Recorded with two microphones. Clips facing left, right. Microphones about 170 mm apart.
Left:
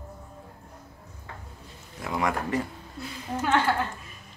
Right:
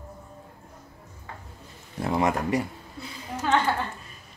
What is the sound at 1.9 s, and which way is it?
Speech, 30° right (ahead or behind).